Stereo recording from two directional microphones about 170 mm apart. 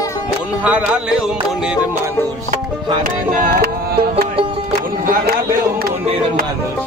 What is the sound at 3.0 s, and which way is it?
Music, 55° right (ahead or behind).